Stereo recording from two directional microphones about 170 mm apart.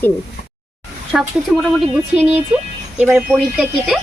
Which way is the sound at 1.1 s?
5° right (ahead or behind).